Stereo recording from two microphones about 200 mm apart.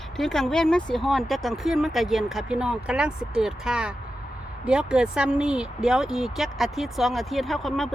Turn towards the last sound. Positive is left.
turn(degrees=0)  # may be behind; listen again after turning